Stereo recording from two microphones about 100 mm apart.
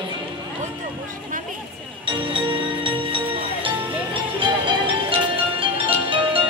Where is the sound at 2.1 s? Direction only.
55° right (ahead or behind).